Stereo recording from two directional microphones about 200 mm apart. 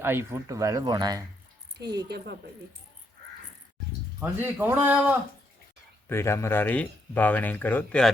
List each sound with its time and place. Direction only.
0.0 s speech: 10° right (ahead or behind)
2.0 s speech: 55° right (ahead or behind)
4.2 s speech: 10° right (ahead or behind)
6.1 s speech: 15° left (ahead or behind)